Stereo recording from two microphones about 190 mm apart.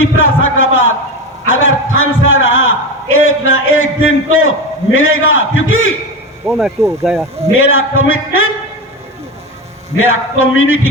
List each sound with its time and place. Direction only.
0.0 s a sound: 90° left
1.5 s a man's voice: 90° left
6.4 s speech: 5° right (ahead or behind)
7.5 s a man's voice: 90° left
10.0 s a man's voice: 90° left